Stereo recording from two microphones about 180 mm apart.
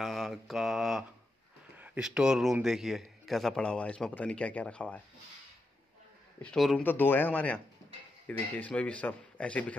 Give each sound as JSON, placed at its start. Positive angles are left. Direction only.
{"t": 0.0, "sound": "mantra", "side_deg": 0}
{"t": 1.8, "sound": "a man's voice", "side_deg": -5}
{"t": 6.4, "sound": "a man's voice", "side_deg": 0}